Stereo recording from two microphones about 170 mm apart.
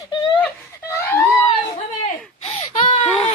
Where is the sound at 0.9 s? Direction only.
15° left (ahead or behind).